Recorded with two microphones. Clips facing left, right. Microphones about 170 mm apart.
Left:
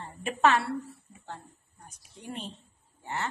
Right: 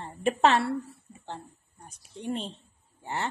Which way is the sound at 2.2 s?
30° right (ahead or behind).